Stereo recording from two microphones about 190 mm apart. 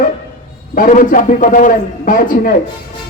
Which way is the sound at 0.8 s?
45° left (ahead or behind).